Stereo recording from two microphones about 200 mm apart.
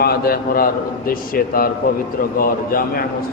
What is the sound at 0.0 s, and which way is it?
A man's voice, 50° left (ahead or behind).